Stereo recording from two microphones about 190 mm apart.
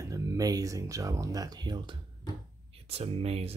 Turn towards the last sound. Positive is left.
turn(degrees=-30)  # may be behind; listen again after turning